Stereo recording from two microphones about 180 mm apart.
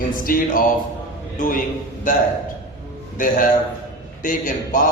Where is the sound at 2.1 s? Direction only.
50° left (ahead or behind).